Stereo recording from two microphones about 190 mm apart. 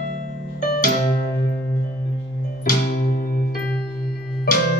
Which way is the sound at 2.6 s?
50° left (ahead or behind).